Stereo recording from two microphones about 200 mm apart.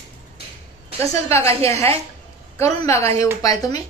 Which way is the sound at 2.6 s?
15° left (ahead or behind).